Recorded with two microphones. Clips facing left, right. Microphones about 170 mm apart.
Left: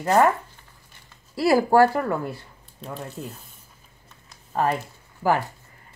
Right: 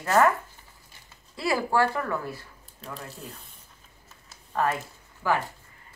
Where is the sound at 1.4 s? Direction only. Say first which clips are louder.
Left 8 dB; 40° left (ahead or behind).